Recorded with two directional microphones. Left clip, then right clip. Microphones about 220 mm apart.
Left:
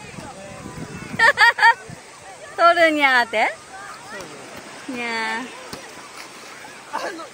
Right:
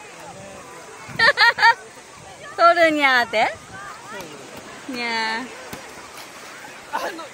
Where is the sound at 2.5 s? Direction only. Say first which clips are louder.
Even; centre (ahead or behind).